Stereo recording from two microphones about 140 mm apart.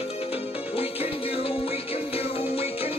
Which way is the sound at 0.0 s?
45° left (ahead or behind).